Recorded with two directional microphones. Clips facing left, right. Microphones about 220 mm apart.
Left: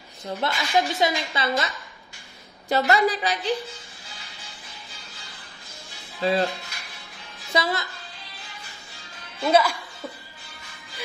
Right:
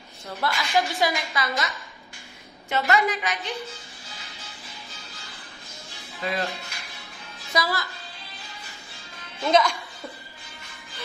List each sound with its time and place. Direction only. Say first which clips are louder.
0.4 s a woman's voice: left 1 dB; 25° left (ahead or behind)
2.7 s a woman's voice: left 3 dB; 35° left (ahead or behind)
6.2 s a woman's voice: left 7 dB; 30° left (ahead or behind)
7.5 s a woman's voice: left 2 dB; 25° left (ahead or behind)
9.4 s speech: left 1 dB; 5° left (ahead or behind)